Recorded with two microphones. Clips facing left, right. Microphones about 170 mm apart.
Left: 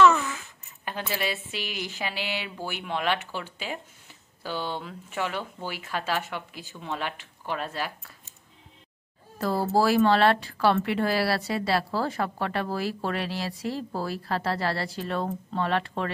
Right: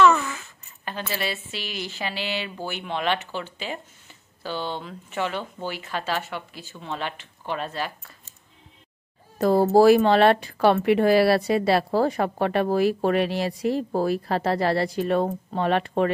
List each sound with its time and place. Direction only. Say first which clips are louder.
0.8 s speech: right 1 dB; 15° left (ahead or behind)
9.4 s speech: right 8 dB; 20° right (ahead or behind)